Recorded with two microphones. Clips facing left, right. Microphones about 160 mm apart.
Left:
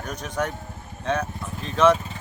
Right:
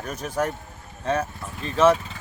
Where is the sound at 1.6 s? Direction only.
5° right (ahead or behind).